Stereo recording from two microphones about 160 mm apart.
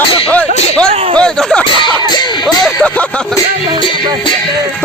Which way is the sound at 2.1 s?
25° left (ahead or behind).